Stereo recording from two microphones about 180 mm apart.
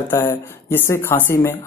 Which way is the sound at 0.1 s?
15° left (ahead or behind).